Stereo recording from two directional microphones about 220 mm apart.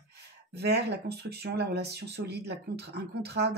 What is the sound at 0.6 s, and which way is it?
Speech, 50° right (ahead or behind).